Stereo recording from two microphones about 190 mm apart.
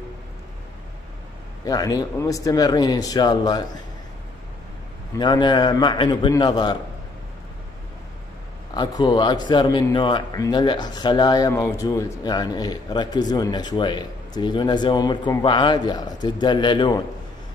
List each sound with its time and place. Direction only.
1.7 s a man's voice: 20° left (ahead or behind)
5.1 s a man's voice: 25° left (ahead or behind)
8.7 s a man's voice: 25° left (ahead or behind)